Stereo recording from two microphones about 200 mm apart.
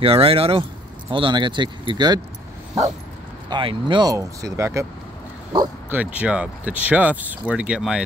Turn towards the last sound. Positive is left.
turn(degrees=-5)  # may be behind; listen again after turning